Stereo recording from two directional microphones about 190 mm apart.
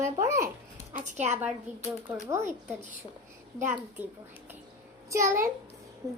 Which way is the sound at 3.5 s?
10° right (ahead or behind).